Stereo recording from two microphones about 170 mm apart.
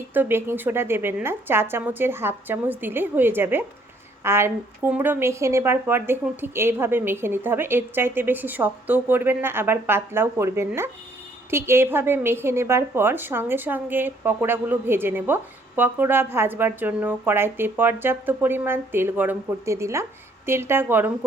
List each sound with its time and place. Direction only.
0.1 s a woman's voice: 10° right (ahead or behind)